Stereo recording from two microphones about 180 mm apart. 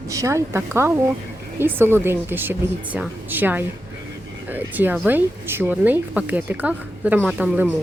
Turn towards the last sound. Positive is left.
turn(degrees=-10)  # may be behind; listen again after turning